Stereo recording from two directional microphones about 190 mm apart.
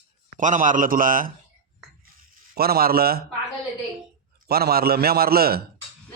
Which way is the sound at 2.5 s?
55° right (ahead or behind).